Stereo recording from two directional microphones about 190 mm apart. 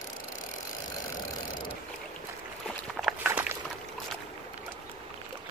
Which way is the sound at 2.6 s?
Centre (ahead or behind).